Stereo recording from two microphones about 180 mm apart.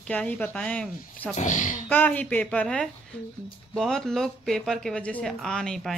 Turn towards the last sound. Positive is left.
turn(degrees=0)  # may be behind; listen again after turning